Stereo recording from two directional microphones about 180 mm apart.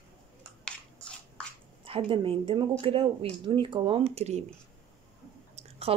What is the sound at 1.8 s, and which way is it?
Speech, 30° right (ahead or behind).